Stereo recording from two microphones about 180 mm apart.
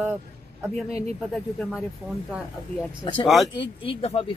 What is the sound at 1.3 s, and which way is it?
Speech, 5° left (ahead or behind).